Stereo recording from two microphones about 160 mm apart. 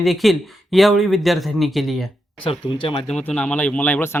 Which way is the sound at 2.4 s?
35° left (ahead or behind).